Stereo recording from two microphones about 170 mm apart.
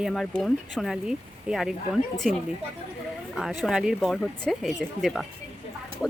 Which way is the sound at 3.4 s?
Centre (ahead or behind).